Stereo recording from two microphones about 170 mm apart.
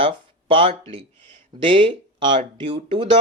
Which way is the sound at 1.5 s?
30° right (ahead or behind).